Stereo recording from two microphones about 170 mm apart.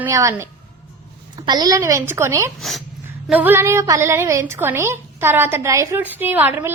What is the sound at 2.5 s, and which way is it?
A woman's voice, centre (ahead or behind).